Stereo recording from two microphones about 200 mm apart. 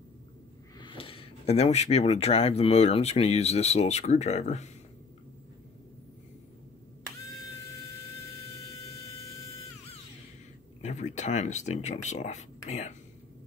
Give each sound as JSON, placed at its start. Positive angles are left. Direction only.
{"t": 0.7, "sound": "speech", "side_deg": 25}
{"t": 10.8, "sound": "speech", "side_deg": 35}